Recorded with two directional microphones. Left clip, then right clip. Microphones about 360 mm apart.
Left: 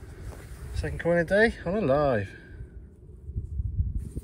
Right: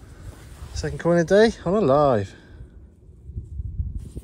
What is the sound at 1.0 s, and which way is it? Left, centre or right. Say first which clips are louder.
Speech: right 5 dB; centre.